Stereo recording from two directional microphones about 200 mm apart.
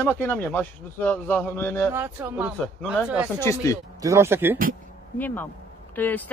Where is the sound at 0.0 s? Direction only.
10° left (ahead or behind).